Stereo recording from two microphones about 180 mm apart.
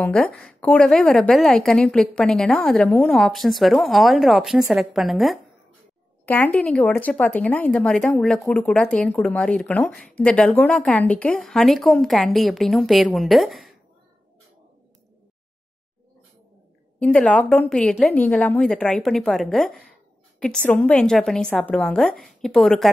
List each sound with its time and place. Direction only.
0.0 s speech: 5° left (ahead or behind)
6.2 s speech: 10° left (ahead or behind)
17.0 s speech: 5° left (ahead or behind)